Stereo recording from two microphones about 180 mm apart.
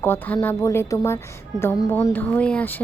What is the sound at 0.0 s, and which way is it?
A woman's voice, 10° left (ahead or behind).